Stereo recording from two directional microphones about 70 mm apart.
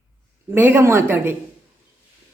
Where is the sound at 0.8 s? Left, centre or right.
Right.